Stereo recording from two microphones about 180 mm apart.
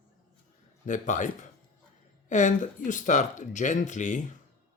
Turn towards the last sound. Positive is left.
turn(degrees=45)  # may be behind; listen again after turning